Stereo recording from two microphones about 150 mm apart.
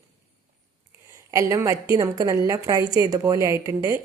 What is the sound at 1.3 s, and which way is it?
Speech, 20° right (ahead or behind).